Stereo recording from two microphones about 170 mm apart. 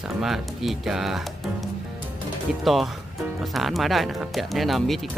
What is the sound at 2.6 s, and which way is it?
Speech, centre (ahead or behind).